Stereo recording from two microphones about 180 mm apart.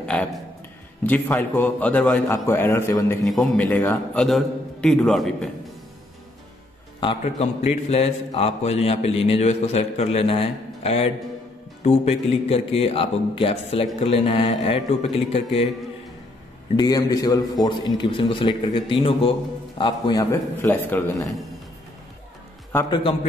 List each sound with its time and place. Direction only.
0.0 s a man's voice: 5° left (ahead or behind)
3.3 s a man's voice: centre (ahead or behind)
7.0 s a man's voice: 30° left (ahead or behind)
16.7 s a man's voice: 20° left (ahead or behind)